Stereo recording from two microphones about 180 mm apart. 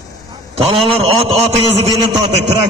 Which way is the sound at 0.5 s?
30° right (ahead or behind).